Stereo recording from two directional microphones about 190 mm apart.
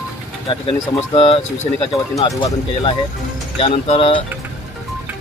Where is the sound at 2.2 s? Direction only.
25° left (ahead or behind).